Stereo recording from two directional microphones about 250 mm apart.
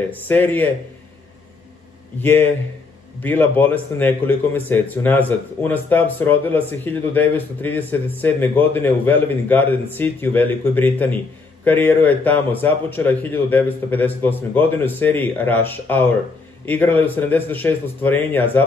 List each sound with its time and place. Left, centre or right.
0.3 s a man's voice: centre
2.2 s a man's voice: centre